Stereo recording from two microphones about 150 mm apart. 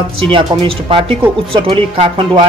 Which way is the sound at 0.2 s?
35° right (ahead or behind).